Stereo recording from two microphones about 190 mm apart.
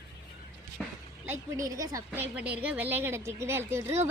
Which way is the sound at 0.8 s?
5° left (ahead or behind).